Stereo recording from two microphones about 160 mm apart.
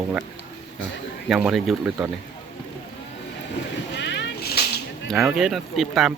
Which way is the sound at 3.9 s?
90° left.